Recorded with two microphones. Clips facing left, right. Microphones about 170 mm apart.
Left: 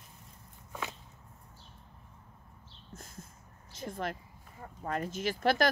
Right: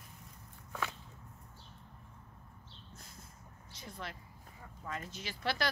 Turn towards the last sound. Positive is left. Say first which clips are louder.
# left 8 dB
turn(degrees=45)  # may be behind; listen again after turning